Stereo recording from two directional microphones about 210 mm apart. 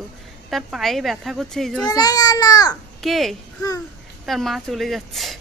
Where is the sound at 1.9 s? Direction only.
20° left (ahead or behind).